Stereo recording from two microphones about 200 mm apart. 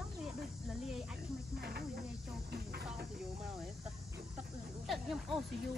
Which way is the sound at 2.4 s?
50° right (ahead or behind).